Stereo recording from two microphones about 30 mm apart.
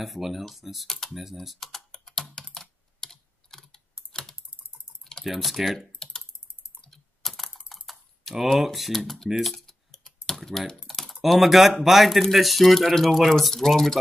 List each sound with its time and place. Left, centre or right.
0.0 s speech: centre
0.8 s speech: centre
1.1 s speech: centre
1.6 s typing: centre
1.9 s computer keyboard: centre
4.1 s typing: left
5.3 s speech: centre
5.8 s typing: left
6.9 s computer keyboard: centre
7.5 s typing: centre
8.5 s speech: centre
8.9 s speech: centre
9.8 s typing: centre
11.2 s speech: centre